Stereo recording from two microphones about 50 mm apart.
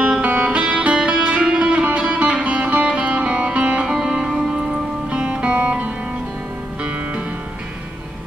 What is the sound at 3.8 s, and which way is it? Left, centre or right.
Music, centre.